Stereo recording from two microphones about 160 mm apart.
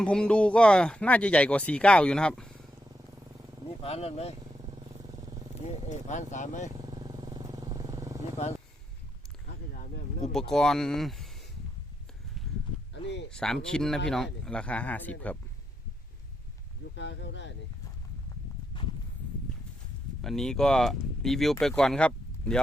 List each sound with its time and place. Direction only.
0.0 s speech: 5° left (ahead or behind)
3.8 s speech: 40° left (ahead or behind)
5.9 s speech: 50° left (ahead or behind)
6.7 s vehicle: 25° right (ahead or behind)
10.3 s speech: 5° left (ahead or behind)
12.9 s speech: 90° left
13.3 s speech: 5° left (ahead or behind)
16.9 s speech: 90° left
20.2 s speech: 5° left (ahead or behind)